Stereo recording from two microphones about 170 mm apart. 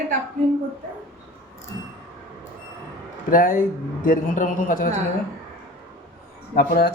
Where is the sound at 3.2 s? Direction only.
55° left (ahead or behind).